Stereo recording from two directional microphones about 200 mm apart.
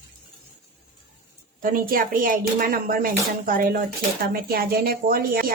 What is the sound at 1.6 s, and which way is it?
A woman's voice, 45° right (ahead or behind).